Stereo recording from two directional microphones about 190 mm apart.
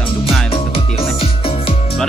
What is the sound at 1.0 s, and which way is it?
Music, 30° left (ahead or behind).